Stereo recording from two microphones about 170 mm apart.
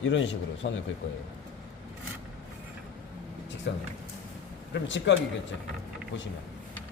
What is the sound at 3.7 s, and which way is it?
Speech, 90° left.